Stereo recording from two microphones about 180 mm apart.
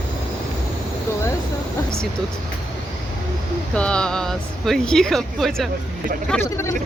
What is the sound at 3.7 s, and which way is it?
Speech, 5° left (ahead or behind).